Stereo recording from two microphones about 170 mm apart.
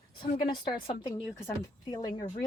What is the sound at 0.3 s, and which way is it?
Speech, 30° left (ahead or behind).